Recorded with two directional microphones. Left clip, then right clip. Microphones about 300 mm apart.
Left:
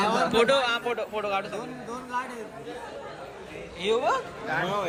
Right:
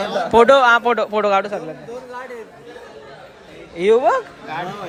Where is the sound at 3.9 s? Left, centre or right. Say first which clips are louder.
Right 10 dB; right.